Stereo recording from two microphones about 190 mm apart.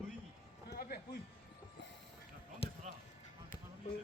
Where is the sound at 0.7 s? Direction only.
55° left (ahead or behind).